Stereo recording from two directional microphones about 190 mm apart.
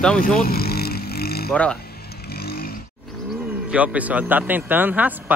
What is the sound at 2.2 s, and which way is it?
Vehicle, 55° left (ahead or behind).